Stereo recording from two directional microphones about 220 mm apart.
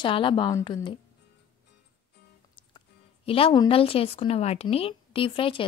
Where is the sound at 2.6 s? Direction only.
25° left (ahead or behind).